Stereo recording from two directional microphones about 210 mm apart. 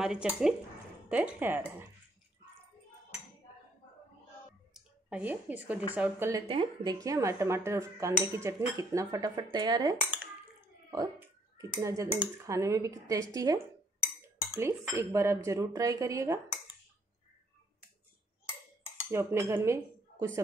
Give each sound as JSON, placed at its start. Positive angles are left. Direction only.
{"t": 0.0, "sound": "speech", "side_deg": -5}
{"t": 4.7, "sound": "speech", "side_deg": -5}
{"t": 6.4, "sound": "speech", "side_deg": -25}
{"t": 10.9, "sound": "clicking", "side_deg": -15}
{"t": 11.8, "sound": "speech", "side_deg": -15}
{"t": 19.0, "sound": "cutlery", "side_deg": -10}